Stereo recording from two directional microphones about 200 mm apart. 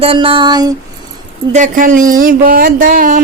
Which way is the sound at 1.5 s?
40° right (ahead or behind).